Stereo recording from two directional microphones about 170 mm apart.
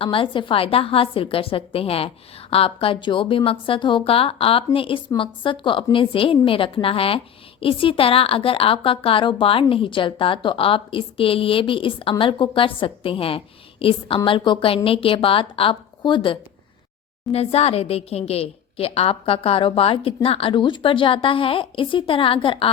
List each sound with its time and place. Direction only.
0.0 s a woman's voice: 30° left (ahead or behind)